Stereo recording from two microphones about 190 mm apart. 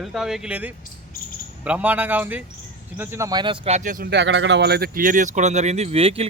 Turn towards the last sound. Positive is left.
turn(degrees=-30)  # may be behind; listen again after turning